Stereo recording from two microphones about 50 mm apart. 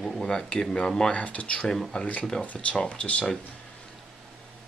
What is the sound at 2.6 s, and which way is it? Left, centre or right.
Speech, left.